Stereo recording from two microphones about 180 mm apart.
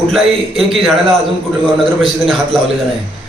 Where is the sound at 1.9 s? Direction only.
Centre (ahead or behind).